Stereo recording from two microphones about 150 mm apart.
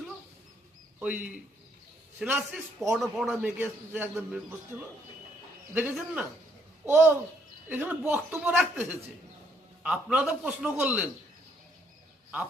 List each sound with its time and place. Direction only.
0.9 s a man's voice: 10° right (ahead or behind)
5.7 s a man's voice: 15° right (ahead or behind)